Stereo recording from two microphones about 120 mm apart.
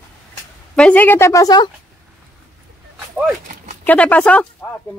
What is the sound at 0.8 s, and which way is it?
Speech, 10° left (ahead or behind).